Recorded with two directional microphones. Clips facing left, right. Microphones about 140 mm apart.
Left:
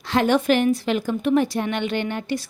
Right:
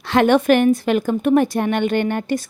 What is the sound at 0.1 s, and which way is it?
Speech, 60° right (ahead or behind).